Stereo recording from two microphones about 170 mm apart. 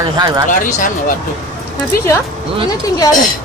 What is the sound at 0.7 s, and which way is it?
Speech, 50° left (ahead or behind).